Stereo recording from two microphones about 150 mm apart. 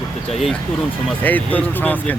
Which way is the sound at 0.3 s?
Centre (ahead or behind).